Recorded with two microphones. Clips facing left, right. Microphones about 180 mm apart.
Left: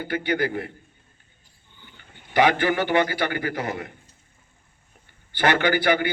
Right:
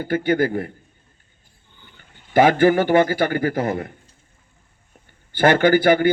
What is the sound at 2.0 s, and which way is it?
A man's voice, 45° right (ahead or behind).